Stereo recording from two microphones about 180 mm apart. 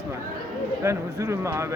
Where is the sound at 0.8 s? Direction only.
15° right (ahead or behind).